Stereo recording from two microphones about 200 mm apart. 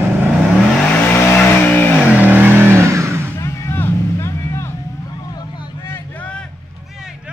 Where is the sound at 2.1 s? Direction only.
10° right (ahead or behind).